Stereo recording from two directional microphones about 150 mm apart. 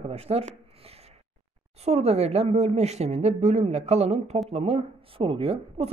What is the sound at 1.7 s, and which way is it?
Speech, 45° right (ahead or behind).